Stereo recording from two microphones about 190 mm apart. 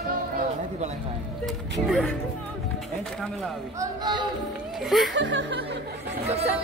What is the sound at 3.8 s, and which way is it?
Speech, 25° right (ahead or behind).